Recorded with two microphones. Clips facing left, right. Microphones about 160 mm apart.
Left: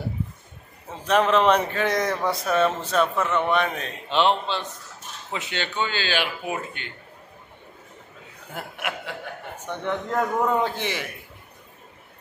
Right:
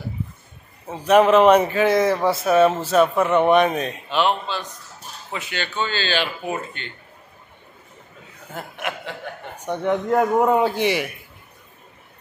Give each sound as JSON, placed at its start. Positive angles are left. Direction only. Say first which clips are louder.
{"t": 0.8, "sound": "speech", "louder": "right 6 dB", "side_deg": -10}
{"t": 4.1, "sound": "a man's voice", "louder": "left 1 dB", "side_deg": 25}
{"t": 8.5, "sound": "speech", "louder": "right 2 dB", "side_deg": 10}
{"t": 9.6, "sound": "speech", "louder": "right 7 dB", "side_deg": -15}